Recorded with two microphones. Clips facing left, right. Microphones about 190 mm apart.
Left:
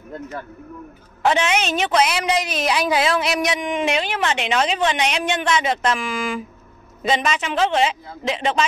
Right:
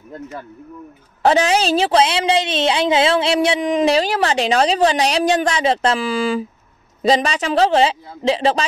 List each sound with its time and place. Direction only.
1.2 s a woman's voice: 35° right (ahead or behind)